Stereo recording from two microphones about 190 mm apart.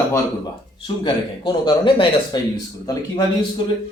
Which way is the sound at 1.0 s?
25° left (ahead or behind).